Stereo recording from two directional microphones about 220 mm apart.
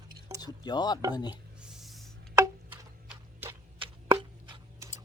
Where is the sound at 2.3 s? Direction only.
10° right (ahead or behind).